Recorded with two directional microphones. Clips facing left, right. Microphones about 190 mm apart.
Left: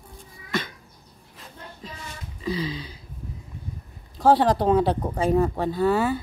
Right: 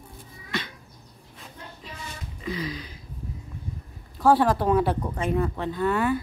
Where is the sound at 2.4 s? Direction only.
30° left (ahead or behind).